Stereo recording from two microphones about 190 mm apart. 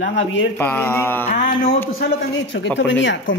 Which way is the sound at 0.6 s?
10° left (ahead or behind).